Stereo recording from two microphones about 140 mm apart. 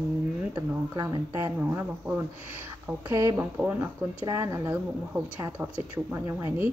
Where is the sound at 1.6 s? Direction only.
15° right (ahead or behind).